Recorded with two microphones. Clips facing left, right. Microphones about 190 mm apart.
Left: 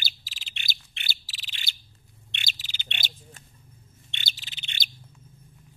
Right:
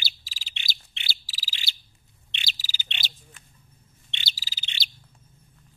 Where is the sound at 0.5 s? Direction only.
50° left (ahead or behind).